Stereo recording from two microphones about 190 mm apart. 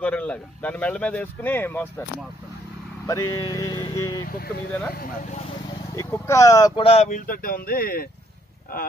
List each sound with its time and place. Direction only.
0.0 s speech: 5° left (ahead or behind)
3.1 s music: 15° left (ahead or behind)
5.9 s speech: 15° left (ahead or behind)
6.8 s speech: 30° left (ahead or behind); by 8.1 s 50° left (ahead or behind)